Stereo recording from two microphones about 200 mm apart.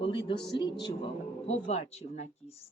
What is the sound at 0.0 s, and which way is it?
Speech, 25° left (ahead or behind).